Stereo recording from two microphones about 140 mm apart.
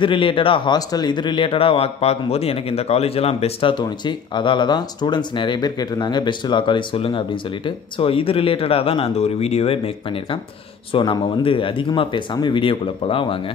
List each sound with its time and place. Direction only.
0.0 s speech: 40° left (ahead or behind)
3.7 s speech: 35° left (ahead or behind)
10.9 s speech: 35° left (ahead or behind)